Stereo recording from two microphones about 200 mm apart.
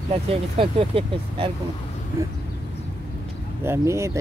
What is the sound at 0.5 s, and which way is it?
Speech, 25° right (ahead or behind).